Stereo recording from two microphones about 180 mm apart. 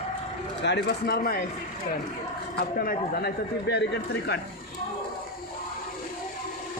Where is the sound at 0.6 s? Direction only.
65° left (ahead or behind).